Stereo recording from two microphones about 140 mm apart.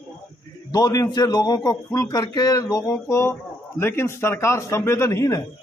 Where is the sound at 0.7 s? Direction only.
25° left (ahead or behind).